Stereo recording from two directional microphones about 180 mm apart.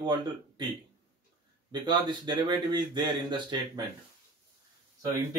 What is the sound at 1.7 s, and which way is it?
Speech, 25° right (ahead or behind).